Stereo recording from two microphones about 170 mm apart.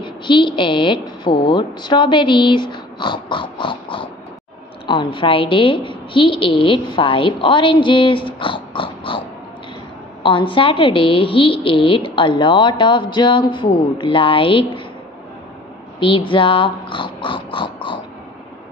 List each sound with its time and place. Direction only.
0.0 s a woman's voice: 30° left (ahead or behind)
10.2 s a woman's voice: 30° left (ahead or behind)
16.0 s a woman's voice: 30° left (ahead or behind)